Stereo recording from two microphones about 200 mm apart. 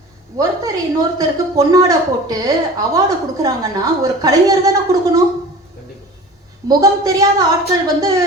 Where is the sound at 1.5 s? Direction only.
15° right (ahead or behind).